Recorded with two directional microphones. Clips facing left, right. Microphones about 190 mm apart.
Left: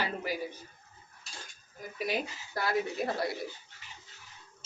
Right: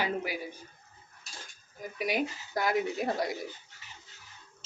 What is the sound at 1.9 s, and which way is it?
Speech, 15° right (ahead or behind).